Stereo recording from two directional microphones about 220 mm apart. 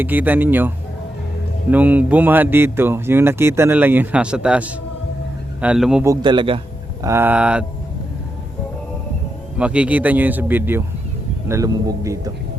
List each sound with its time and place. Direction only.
0.0 s speech: 10° right (ahead or behind)
1.7 s speech: 5° right (ahead or behind)
6.1 s a man's voice: 20° right (ahead or behind)
7.0 s speech: 10° right (ahead or behind)
9.6 s speech: 5° right (ahead or behind)